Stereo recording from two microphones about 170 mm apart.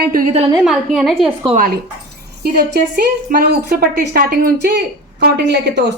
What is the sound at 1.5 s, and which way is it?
A woman's voice, 55° right (ahead or behind).